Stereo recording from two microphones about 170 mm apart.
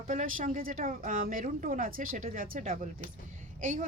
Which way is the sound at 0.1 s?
50° right (ahead or behind).